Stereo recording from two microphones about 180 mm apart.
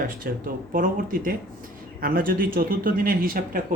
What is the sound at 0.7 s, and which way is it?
Speech, 50° right (ahead or behind).